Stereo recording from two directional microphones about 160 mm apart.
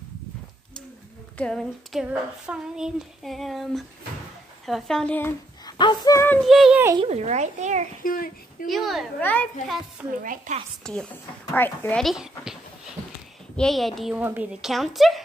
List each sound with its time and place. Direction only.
1.4 s female singing: centre (ahead or behind)
5.7 s a sound: 25° left (ahead or behind)
6.4 s female singing: centre (ahead or behind)
7.0 s a child's voice: 40° right (ahead or behind)
8.0 s speech: 60° left (ahead or behind)
8.6 s female singing: centre (ahead or behind)
9.2 s a child's voice: 10° left (ahead or behind)
10.1 s a woman's voice: 60° right (ahead or behind)
10.8 s female singing: 5° left (ahead or behind)
11.5 s a child's voice: 15° left (ahead or behind)
12.0 s a sound: centre (ahead or behind)
13.6 s female singing: centre (ahead or behind)